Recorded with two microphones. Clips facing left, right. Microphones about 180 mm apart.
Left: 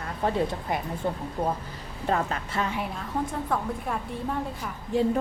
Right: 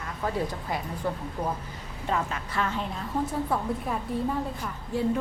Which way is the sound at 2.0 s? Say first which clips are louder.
Left 3 dB; 40° left (ahead or behind).